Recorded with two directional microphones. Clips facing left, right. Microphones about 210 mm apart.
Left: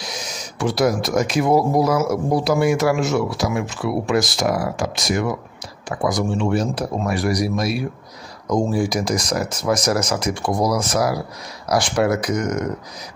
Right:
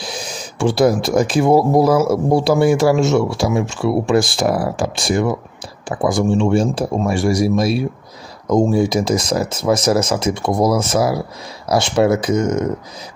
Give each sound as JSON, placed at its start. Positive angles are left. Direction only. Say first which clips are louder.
{"t": 0.0, "sound": "speech", "louder": "right 4 dB", "side_deg": -30}